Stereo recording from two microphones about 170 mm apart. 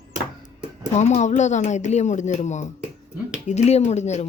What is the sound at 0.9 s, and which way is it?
Speech, 40° left (ahead or behind).